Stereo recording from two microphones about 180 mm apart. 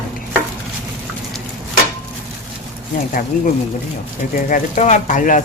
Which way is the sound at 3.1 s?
50° left (ahead or behind).